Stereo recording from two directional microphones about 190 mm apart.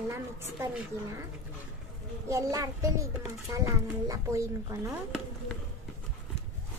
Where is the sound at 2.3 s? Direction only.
15° right (ahead or behind).